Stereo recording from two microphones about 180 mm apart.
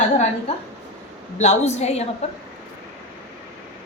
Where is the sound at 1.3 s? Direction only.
40° left (ahead or behind).